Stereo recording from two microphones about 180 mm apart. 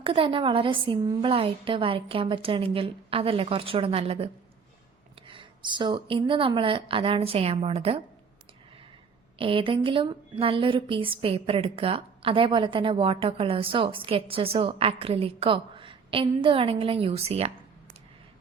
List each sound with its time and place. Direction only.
0.0 s a woman's voice: 30° right (ahead or behind)
5.3 s a woman's voice: 25° right (ahead or behind)
9.4 s a woman's voice: 30° right (ahead or behind)